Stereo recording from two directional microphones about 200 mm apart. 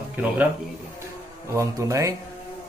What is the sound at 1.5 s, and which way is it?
Speech, 15° right (ahead or behind).